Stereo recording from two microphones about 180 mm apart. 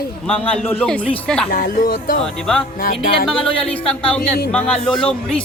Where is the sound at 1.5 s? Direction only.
50° left (ahead or behind).